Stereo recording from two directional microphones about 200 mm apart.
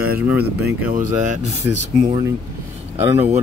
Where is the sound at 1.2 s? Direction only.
35° right (ahead or behind).